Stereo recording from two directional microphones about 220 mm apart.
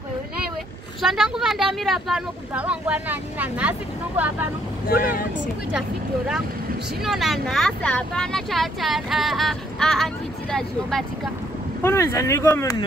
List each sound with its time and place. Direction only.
1.0 s speech: centre (ahead or behind)
4.8 s speech: 40° left (ahead or behind)
5.7 s speech: 5° right (ahead or behind)
11.8 s speech: 10° left (ahead or behind)